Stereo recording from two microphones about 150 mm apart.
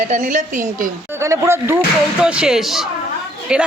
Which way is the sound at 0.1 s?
55° right (ahead or behind).